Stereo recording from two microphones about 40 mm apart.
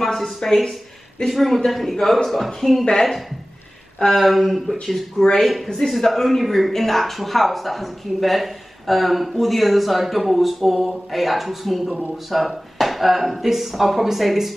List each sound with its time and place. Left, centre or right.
0.0 s speech: centre
2.8 s a woman's voice: centre
4.1 s a woman's voice: centre